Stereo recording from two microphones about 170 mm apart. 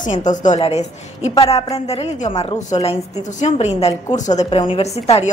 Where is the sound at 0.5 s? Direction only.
35° left (ahead or behind).